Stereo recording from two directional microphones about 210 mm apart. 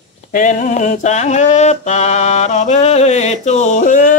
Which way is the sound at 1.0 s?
35° left (ahead or behind).